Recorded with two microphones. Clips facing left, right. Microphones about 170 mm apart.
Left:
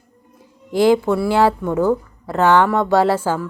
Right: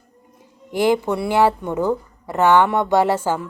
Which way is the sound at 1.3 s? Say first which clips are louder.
Right 1 dB; 15° right (ahead or behind).